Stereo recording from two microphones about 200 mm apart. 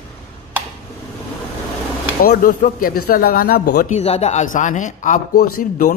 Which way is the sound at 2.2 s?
45° left (ahead or behind).